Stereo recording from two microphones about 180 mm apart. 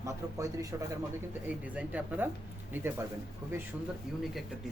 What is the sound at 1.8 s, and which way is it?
Speech, 5° right (ahead or behind).